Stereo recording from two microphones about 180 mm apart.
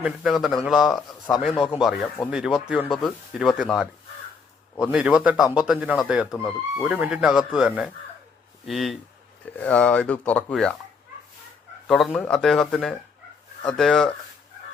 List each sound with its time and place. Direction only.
0.0 s speech: centre (ahead or behind)
11.9 s speech: 5° left (ahead or behind)